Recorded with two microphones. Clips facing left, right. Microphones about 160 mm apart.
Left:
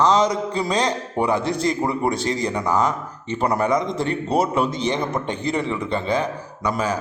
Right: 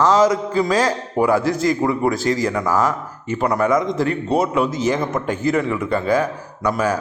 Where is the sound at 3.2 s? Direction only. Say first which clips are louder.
Right 2 dB; 5° right (ahead or behind).